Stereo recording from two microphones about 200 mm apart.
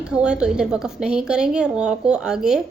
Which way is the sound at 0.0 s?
5° right (ahead or behind).